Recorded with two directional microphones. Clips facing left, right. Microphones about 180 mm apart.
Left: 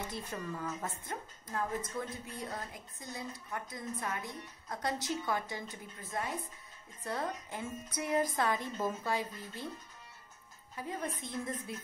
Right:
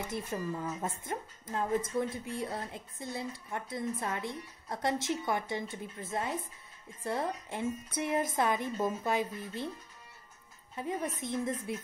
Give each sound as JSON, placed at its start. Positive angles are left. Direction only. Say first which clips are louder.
{"t": 0.1, "sound": "a woman's voice", "louder": "right 5 dB", "side_deg": -20}
{"t": 10.8, "sound": "a woman's voice", "louder": "right 4 dB", "side_deg": -25}